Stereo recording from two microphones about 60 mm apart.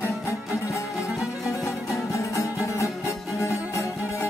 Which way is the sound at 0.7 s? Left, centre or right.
Left.